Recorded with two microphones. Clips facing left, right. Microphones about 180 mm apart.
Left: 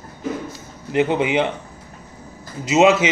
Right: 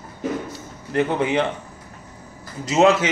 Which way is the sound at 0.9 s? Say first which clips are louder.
Left 2 dB; 20° left (ahead or behind).